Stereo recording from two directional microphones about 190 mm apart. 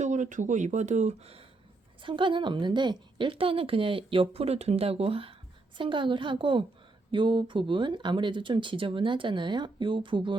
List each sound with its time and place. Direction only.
0.0 s a woman's voice: 40° right (ahead or behind)